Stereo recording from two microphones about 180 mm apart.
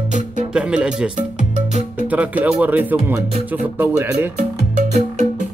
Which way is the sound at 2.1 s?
10° right (ahead or behind).